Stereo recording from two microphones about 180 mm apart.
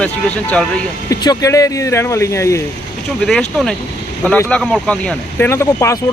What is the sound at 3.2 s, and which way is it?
Speech, 5° left (ahead or behind).